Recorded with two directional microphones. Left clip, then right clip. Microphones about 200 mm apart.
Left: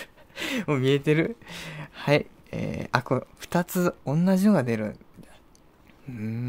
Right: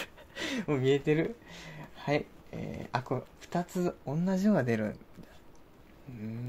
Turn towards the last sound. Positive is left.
turn(degrees=50)  # may be behind; listen again after turning